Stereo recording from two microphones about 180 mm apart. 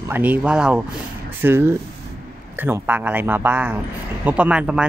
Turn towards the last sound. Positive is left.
turn(degrees=-5)  # may be behind; listen again after turning